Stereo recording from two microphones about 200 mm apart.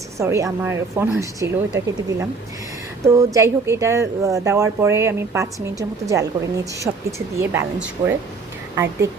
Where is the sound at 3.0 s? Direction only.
15° right (ahead or behind).